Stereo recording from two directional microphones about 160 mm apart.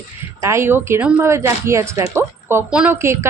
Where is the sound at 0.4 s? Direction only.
15° right (ahead or behind).